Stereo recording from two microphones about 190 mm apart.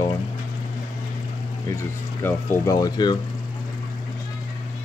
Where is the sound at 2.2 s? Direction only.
10° left (ahead or behind).